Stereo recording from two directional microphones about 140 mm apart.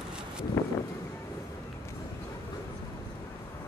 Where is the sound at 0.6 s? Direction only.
20° left (ahead or behind).